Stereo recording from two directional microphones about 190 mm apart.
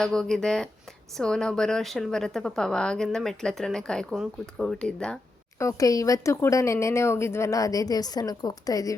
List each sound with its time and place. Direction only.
0.0 s a woman's voice: 5° left (ahead or behind)
5.5 s speech: 15° left (ahead or behind)